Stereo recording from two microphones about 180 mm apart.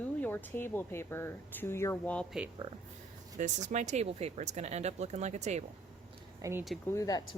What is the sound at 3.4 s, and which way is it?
Speech, 40° right (ahead or behind).